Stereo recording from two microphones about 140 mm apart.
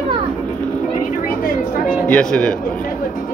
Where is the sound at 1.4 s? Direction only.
90° left.